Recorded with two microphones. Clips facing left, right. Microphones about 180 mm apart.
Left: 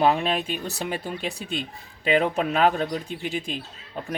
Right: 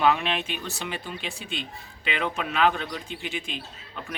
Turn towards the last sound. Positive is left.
turn(degrees=40)  # may be behind; listen again after turning